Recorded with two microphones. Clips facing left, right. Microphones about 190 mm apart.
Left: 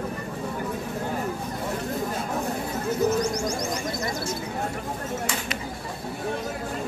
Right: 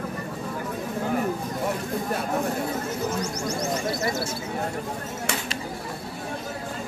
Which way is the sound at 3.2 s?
5° right (ahead or behind).